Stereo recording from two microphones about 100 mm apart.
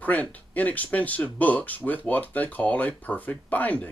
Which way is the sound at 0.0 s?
15° left (ahead or behind).